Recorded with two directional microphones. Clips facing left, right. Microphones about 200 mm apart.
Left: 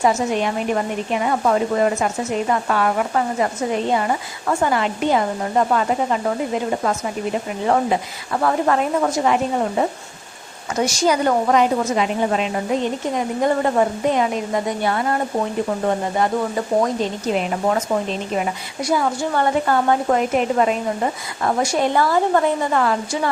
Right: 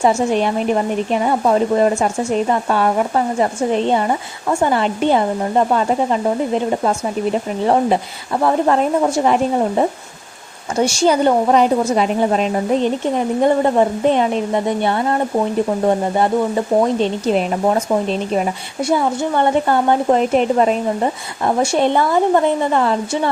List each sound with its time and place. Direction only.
0.0 s speech: 30° right (ahead or behind)
8.4 s speech: 25° right (ahead or behind)